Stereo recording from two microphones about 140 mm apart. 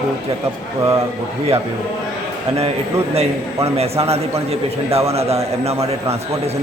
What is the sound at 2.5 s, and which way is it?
A man's voice, 45° right (ahead or behind).